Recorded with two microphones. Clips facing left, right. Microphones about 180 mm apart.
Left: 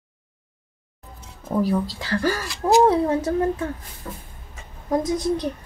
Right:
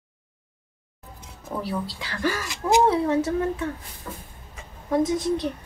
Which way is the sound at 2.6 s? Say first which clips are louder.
Left 3 dB; 30° left (ahead or behind).